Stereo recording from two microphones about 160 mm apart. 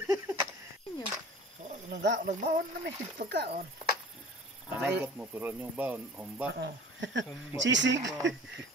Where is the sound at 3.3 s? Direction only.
90° right.